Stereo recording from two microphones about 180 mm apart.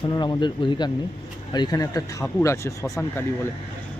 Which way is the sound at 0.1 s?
25° left (ahead or behind).